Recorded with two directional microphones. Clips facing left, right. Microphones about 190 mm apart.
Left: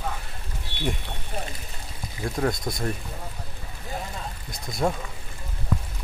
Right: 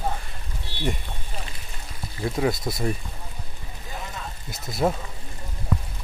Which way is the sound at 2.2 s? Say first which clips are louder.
Right 2 dB; 5° right (ahead or behind).